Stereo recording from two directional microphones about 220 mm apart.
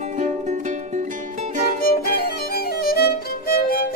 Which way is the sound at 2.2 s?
45° left (ahead or behind).